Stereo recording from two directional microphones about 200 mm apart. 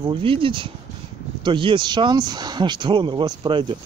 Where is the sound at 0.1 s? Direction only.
25° right (ahead or behind).